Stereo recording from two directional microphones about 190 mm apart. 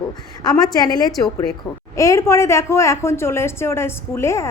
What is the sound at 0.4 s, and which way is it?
A woman's voice, 20° left (ahead or behind).